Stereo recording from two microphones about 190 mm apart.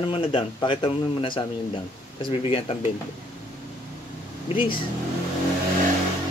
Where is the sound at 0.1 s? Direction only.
30° left (ahead or behind).